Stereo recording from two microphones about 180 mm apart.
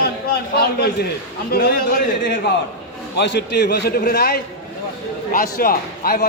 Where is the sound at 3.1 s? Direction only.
70° left (ahead or behind).